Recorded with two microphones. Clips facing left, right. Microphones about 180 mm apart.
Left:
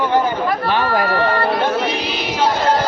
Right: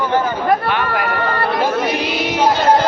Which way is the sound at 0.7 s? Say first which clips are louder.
Left 2 dB; 35° left (ahead or behind).